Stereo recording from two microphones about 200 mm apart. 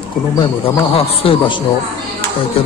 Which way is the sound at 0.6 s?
30° left (ahead or behind).